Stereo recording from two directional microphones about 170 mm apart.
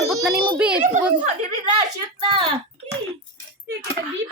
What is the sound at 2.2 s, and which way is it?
Speech, 30° right (ahead or behind).